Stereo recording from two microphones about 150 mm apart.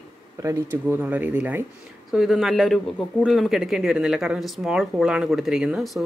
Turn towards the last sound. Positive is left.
turn(degrees=-5)  # may be behind; listen again after turning